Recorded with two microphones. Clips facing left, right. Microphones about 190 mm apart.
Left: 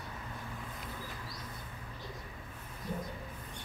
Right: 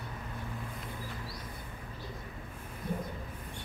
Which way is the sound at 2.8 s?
55° right (ahead or behind).